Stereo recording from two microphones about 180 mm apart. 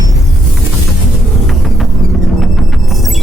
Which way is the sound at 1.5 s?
Centre (ahead or behind).